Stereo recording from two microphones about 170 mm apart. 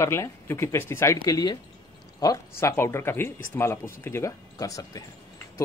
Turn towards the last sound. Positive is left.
turn(degrees=20)  # may be behind; listen again after turning